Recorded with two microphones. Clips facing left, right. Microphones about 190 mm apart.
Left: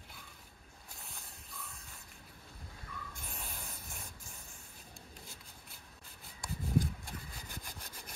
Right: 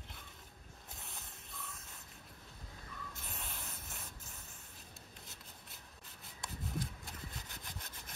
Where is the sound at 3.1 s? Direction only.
Centre (ahead or behind).